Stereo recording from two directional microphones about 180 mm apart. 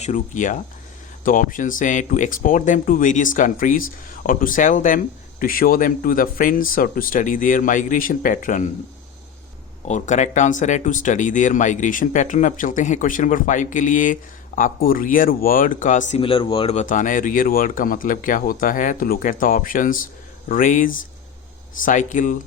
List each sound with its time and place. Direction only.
0.0 s speech: 45° left (ahead or behind)
9.8 s speech: 40° left (ahead or behind)
16.2 s speech: 30° left (ahead or behind); by 22.4 s 45° left (ahead or behind)